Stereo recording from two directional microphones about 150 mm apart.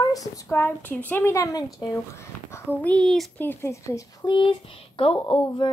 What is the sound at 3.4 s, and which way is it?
A woman's voice, 15° left (ahead or behind).